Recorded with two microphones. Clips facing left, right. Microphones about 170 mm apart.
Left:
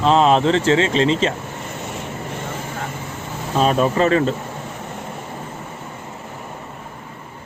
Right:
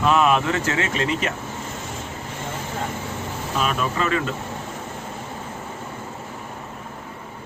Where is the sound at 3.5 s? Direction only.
35° left (ahead or behind).